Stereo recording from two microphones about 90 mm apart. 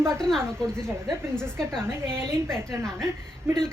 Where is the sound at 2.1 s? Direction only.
30° right (ahead or behind).